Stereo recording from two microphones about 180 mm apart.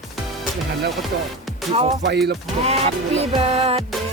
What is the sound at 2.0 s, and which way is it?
Speech, 65° right (ahead or behind).